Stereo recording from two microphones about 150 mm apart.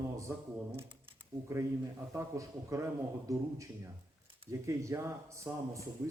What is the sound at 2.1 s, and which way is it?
A man's voice, 20° right (ahead or behind).